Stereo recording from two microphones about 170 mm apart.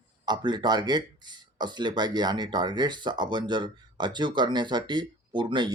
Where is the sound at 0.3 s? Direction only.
25° right (ahead or behind).